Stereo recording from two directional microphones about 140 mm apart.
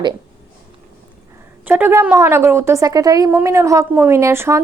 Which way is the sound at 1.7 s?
15° right (ahead or behind).